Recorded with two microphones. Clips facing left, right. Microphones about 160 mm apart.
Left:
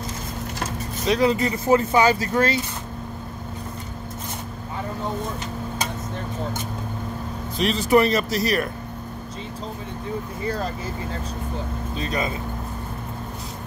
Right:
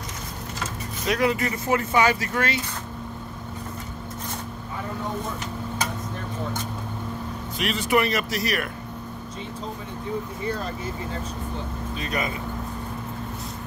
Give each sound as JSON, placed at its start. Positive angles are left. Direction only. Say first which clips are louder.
{"t": 1.0, "sound": "speech", "louder": "left 3 dB", "side_deg": 30}
{"t": 7.5, "sound": "speech", "louder": "left 5 dB", "side_deg": 35}
{"t": 12.0, "sound": "speech", "louder": "left 2 dB", "side_deg": 30}